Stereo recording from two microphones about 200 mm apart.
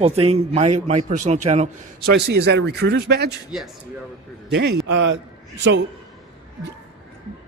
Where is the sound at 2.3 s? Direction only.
55° right (ahead or behind).